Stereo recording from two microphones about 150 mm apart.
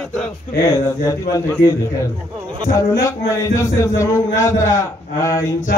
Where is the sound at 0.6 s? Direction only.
20° left (ahead or behind).